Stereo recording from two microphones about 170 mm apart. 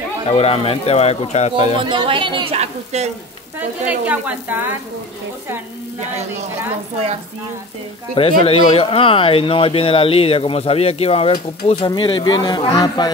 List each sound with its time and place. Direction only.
0.3 s speech: 35° left (ahead or behind)
1.8 s speech: 30° right (ahead or behind)
3.5 s a woman's voice: 10° right (ahead or behind)
8.1 s speech: 35° left (ahead or behind)